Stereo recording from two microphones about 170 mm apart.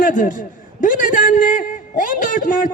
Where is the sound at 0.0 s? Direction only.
50° left (ahead or behind).